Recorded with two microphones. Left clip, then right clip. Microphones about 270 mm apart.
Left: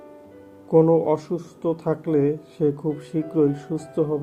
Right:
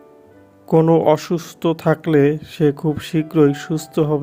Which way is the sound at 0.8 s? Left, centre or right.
Right.